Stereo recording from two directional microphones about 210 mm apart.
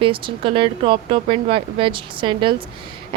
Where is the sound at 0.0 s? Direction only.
25° right (ahead or behind).